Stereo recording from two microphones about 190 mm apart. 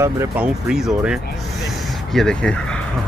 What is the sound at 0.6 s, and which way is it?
Speech, 5° right (ahead or behind).